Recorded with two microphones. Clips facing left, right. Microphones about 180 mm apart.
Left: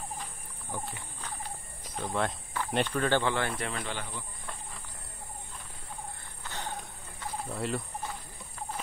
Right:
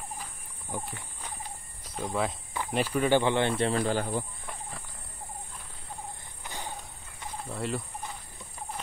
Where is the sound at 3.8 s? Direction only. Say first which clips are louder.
Right 10 dB; 40° right (ahead or behind).